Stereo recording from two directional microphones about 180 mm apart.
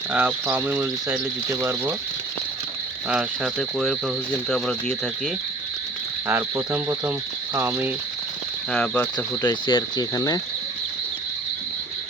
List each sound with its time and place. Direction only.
0.1 s speech: 10° right (ahead or behind)
3.1 s speech: centre (ahead or behind)
6.2 s speech: 10° right (ahead or behind)
8.7 s speech: 5° left (ahead or behind)
9.1 s speech: 20° left (ahead or behind)